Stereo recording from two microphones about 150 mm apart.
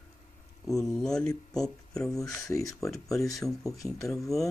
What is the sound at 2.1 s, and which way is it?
Speech, 20° left (ahead or behind).